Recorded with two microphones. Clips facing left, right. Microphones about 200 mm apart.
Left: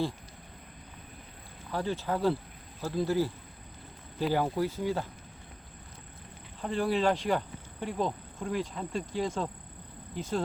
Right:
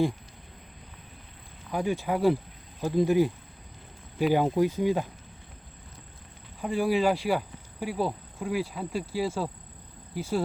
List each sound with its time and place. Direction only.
1.7 s speech: 15° right (ahead or behind)
6.6 s speech: 10° right (ahead or behind)